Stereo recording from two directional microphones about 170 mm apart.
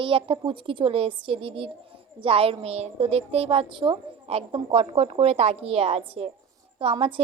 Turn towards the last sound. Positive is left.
turn(degrees=-30)  # may be behind; listen again after turning